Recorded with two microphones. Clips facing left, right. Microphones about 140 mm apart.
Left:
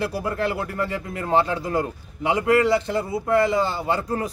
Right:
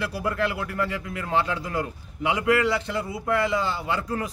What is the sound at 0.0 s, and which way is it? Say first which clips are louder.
Speech: left 2 dB; 35° left (ahead or behind).